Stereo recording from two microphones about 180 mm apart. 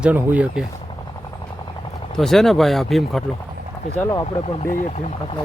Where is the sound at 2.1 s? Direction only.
Centre (ahead or behind).